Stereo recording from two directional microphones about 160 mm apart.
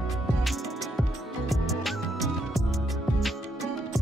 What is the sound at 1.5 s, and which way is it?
Music, centre (ahead or behind).